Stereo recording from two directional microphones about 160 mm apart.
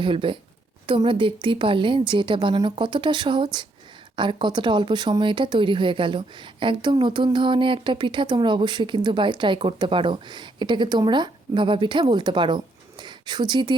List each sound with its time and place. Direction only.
0.0 s a woman's voice: 35° right (ahead or behind)